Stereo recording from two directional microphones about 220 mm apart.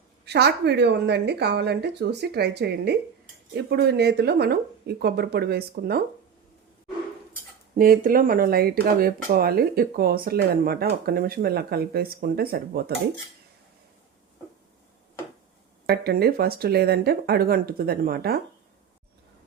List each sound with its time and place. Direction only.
0.3 s speech: 50° right (ahead or behind)
7.8 s speech: 40° right (ahead or behind)
15.9 s speech: 45° right (ahead or behind)